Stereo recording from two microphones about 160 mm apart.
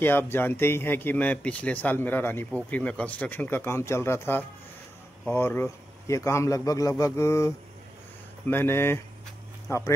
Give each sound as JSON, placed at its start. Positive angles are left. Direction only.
{"t": 0.0, "sound": "speech", "side_deg": 15}